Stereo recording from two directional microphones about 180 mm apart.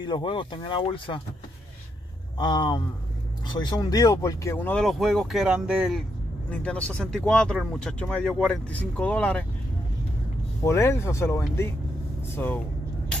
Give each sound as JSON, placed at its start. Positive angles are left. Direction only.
{"t": 0.0, "sound": "speech", "side_deg": 25}
{"t": 2.3, "sound": "speech", "side_deg": 25}
{"t": 10.6, "sound": "speech", "side_deg": 15}